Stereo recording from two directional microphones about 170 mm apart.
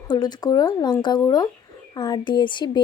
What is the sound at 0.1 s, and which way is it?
A woman's voice, 25° left (ahead or behind).